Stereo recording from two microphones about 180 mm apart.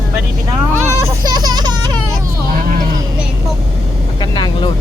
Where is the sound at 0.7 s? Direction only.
20° right (ahead or behind).